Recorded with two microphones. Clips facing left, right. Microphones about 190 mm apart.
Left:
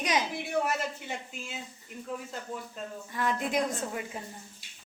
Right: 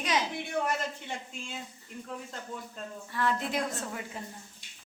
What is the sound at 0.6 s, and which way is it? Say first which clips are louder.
Speech: left 1 dB; 5° left (ahead or behind).